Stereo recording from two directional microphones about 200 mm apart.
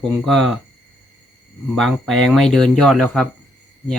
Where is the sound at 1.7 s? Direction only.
Centre (ahead or behind).